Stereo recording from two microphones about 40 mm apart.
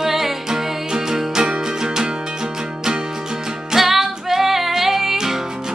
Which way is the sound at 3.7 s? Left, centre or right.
Centre.